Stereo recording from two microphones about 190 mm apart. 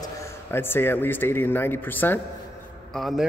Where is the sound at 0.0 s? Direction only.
15° left (ahead or behind).